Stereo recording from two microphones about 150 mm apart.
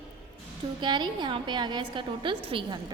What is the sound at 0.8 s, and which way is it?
A woman's voice, 30° right (ahead or behind).